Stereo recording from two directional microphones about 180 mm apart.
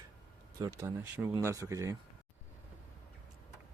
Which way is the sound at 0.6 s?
15° right (ahead or behind).